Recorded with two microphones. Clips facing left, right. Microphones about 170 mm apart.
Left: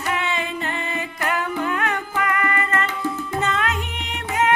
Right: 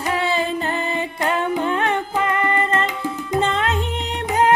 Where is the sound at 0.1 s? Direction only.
35° right (ahead or behind).